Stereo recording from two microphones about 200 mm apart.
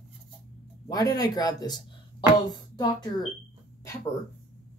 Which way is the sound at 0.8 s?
20° left (ahead or behind).